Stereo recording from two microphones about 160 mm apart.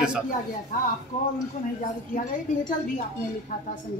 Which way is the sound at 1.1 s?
45° left (ahead or behind).